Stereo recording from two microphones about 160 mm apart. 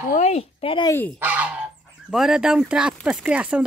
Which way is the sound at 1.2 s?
10° right (ahead or behind).